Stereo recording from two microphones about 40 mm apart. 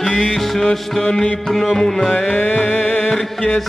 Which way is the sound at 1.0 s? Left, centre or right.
Left.